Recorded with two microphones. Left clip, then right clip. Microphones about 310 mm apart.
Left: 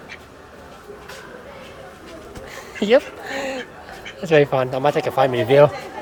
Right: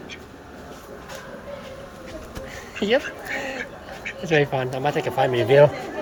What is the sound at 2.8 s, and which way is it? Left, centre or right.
Speech, centre.